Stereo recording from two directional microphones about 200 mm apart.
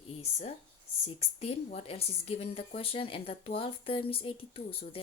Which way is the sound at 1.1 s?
30° left (ahead or behind).